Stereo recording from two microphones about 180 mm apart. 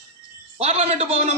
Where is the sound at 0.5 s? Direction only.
35° right (ahead or behind).